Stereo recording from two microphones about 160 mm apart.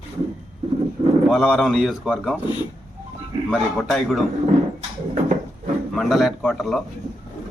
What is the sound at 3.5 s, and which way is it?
Speech, centre (ahead or behind).